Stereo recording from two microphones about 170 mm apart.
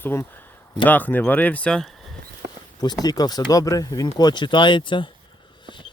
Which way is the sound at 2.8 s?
25° left (ahead or behind).